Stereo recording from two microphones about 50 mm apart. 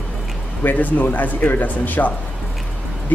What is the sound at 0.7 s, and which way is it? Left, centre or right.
Speech, left.